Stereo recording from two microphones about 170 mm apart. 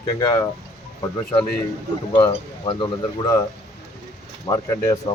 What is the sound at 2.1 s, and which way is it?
Speech, 30° left (ahead or behind).